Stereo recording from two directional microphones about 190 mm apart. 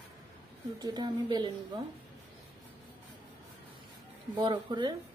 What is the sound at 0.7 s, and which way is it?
Speech, 20° right (ahead or behind).